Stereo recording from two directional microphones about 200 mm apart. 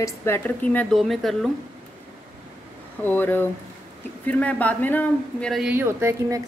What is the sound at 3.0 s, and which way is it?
A woman's voice, 10° left (ahead or behind).